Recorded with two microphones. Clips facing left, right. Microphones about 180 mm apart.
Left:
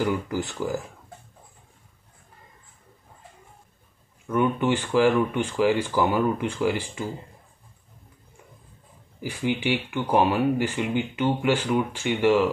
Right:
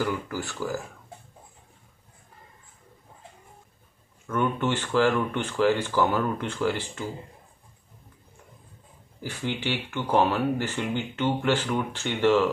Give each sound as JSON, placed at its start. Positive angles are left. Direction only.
{"t": 0.0, "sound": "speech", "side_deg": 20}
{"t": 4.3, "sound": "speech", "side_deg": 15}
{"t": 9.2, "sound": "speech", "side_deg": 15}